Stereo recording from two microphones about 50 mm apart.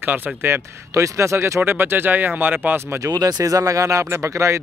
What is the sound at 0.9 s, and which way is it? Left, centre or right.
Speech, right.